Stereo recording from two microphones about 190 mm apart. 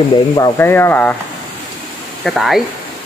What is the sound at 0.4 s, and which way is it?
Speech, 10° left (ahead or behind).